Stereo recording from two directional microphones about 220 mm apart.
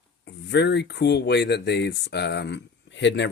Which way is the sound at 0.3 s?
50° left (ahead or behind).